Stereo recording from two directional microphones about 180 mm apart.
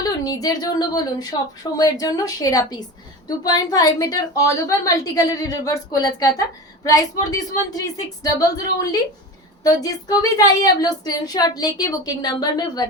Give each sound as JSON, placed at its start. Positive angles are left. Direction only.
{"t": 0.0, "sound": "a woman's voice", "side_deg": 20}